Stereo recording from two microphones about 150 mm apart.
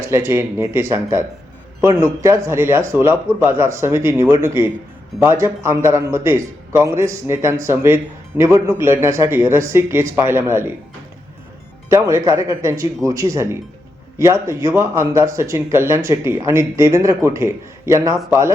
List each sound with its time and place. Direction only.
0.0 s a man's voice: 15° right (ahead or behind)
11.9 s speech: 20° right (ahead or behind)